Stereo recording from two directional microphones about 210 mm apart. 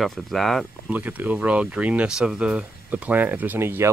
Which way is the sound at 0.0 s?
Centre (ahead or behind).